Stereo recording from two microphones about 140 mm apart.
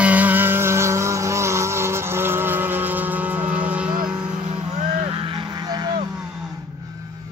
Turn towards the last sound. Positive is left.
turn(degrees=-30)  # may be behind; listen again after turning